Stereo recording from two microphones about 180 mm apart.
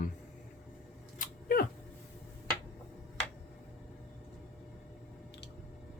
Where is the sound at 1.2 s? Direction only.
55° left (ahead or behind).